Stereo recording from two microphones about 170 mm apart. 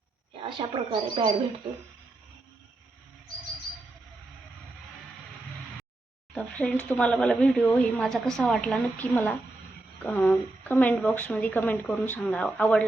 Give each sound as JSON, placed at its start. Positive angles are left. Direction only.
{"t": 0.3, "sound": "speech", "side_deg": -30}
{"t": 6.3, "sound": "speech", "side_deg": 10}